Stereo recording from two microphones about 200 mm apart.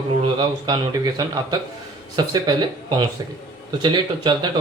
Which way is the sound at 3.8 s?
20° right (ahead or behind).